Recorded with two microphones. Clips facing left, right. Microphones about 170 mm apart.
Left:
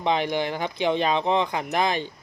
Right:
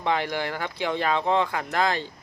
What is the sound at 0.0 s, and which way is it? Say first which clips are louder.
Speech: left 2 dB; 20° left (ahead or behind).